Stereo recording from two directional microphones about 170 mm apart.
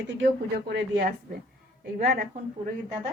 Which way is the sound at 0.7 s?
75° right (ahead or behind).